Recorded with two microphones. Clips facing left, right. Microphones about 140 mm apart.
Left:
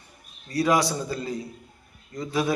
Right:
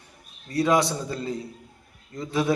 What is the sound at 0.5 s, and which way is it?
A man's voice, 25° right (ahead or behind).